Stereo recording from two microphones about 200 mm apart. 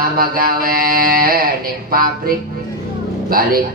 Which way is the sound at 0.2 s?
45° right (ahead or behind).